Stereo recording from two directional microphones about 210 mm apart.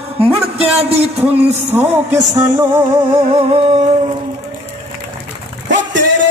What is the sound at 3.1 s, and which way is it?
Speech, 25° right (ahead or behind).